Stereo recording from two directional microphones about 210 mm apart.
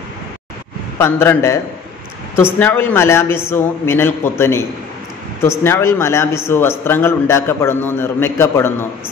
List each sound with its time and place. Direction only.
0.9 s a man's voice: 10° left (ahead or behind)